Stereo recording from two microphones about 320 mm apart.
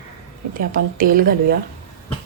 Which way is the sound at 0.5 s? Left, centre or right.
Right.